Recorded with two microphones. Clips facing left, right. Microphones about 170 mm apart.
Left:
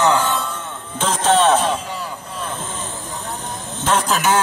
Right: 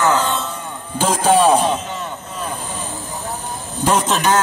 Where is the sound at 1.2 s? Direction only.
5° right (ahead or behind).